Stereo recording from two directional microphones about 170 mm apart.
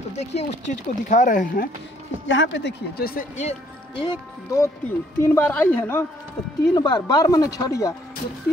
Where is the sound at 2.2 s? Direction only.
90° left; by 3.2 s 65° left (ahead or behind).